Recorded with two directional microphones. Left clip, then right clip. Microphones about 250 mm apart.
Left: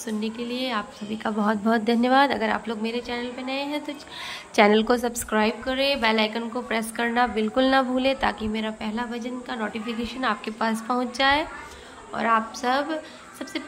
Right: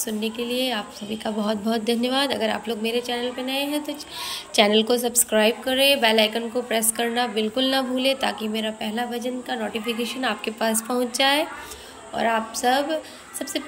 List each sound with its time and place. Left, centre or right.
0.0 s a woman's voice: centre